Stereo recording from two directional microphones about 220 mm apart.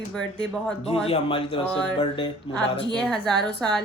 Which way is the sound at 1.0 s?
25° left (ahead or behind).